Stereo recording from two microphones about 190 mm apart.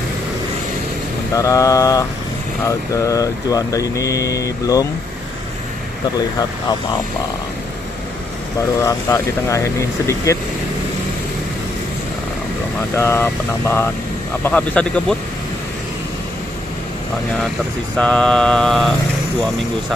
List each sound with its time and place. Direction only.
1.3 s speech: 15° left (ahead or behind)
8.8 s speech: 15° left (ahead or behind)
12.9 s speech: 10° left (ahead or behind)
17.9 s mantra: 5° left (ahead or behind)